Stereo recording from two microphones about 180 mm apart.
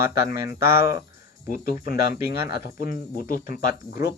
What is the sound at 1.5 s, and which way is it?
Speech, 55° left (ahead or behind).